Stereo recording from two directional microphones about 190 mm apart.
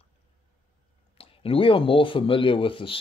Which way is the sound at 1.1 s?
30° left (ahead or behind).